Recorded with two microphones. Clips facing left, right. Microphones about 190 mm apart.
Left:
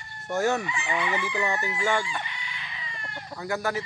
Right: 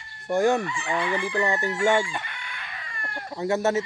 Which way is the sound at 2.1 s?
55° right (ahead or behind).